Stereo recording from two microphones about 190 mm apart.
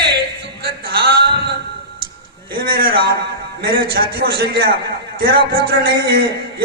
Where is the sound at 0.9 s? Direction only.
55° right (ahead or behind).